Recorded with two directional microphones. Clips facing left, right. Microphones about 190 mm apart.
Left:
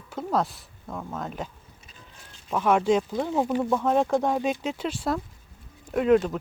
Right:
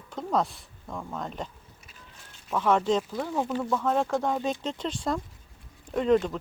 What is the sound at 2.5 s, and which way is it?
Speech, 10° left (ahead or behind).